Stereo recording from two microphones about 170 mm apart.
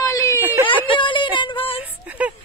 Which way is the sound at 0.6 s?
30° left (ahead or behind).